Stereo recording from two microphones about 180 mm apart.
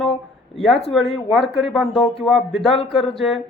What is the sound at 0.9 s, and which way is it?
Speech, centre (ahead or behind).